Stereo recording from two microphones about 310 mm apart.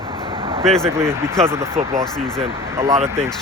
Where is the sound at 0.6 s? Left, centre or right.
Centre.